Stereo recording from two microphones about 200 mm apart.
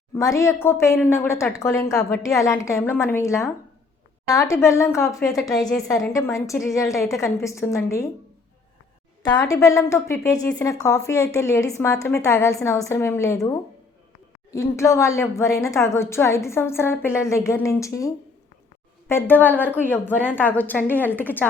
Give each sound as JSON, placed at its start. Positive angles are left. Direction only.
{"t": 0.2, "sound": "a woman's voice", "side_deg": 15}
{"t": 9.3, "sound": "a woman's voice", "side_deg": 15}